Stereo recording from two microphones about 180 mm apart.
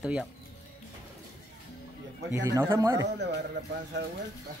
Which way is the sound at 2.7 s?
15° right (ahead or behind).